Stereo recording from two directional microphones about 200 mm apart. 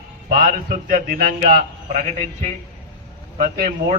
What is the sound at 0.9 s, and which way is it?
A man's voice, 45° right (ahead or behind).